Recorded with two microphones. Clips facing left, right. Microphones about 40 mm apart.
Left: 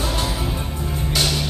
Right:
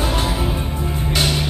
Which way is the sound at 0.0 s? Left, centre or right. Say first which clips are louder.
Right 3 dB; centre.